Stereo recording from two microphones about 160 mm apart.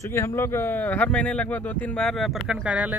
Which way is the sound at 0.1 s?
15° left (ahead or behind).